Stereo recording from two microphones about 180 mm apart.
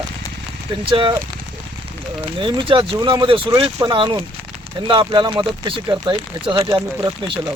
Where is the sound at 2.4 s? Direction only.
30° right (ahead or behind).